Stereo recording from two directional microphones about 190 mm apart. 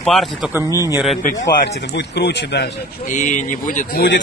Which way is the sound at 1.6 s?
65° left (ahead or behind).